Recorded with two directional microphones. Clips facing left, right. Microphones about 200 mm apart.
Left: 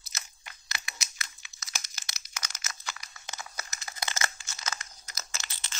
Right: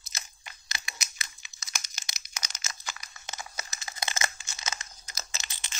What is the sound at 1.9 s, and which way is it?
Crumpling, 15° right (ahead or behind).